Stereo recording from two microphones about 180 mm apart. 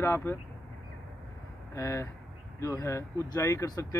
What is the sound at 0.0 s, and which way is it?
Speech, 15° left (ahead or behind).